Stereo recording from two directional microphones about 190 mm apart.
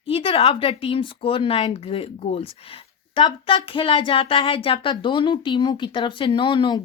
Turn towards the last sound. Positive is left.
turn(degrees=25)  # may be behind; listen again after turning